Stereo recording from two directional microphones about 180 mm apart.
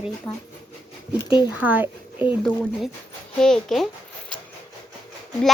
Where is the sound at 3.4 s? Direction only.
5° left (ahead or behind).